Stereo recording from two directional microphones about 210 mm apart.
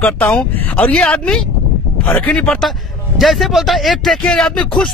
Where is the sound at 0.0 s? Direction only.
10° left (ahead or behind).